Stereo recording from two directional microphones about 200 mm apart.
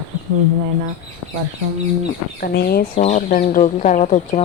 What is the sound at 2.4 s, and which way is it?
Speech, 50° left (ahead or behind).